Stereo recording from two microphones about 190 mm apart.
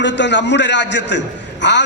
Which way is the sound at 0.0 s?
70° left (ahead or behind).